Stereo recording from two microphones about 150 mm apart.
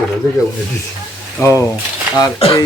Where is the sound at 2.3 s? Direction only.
40° left (ahead or behind).